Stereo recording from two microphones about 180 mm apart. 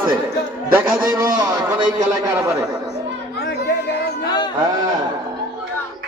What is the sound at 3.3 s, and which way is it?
Chatter, 65° left (ahead or behind).